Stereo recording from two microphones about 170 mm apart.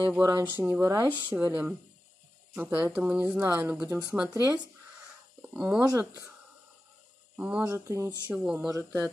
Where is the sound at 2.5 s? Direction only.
10° right (ahead or behind).